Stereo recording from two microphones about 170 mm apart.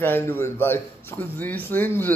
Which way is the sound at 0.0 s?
10° left (ahead or behind).